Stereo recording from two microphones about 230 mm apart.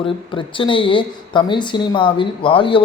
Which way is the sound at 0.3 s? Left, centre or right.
Left.